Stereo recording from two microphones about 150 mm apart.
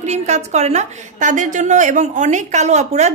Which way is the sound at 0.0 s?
50° right (ahead or behind).